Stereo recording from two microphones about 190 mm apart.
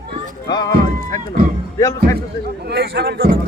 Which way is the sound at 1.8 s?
15° left (ahead or behind).